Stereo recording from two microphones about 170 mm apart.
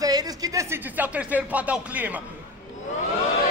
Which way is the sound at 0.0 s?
20° right (ahead or behind).